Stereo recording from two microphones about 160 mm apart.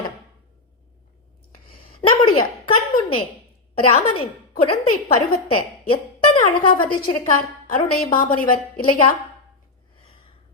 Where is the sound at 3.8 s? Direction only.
35° left (ahead or behind).